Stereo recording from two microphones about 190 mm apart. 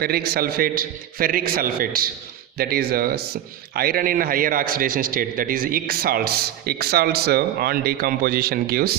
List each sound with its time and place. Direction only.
0.0 s a man's voice: 55° right (ahead or behind)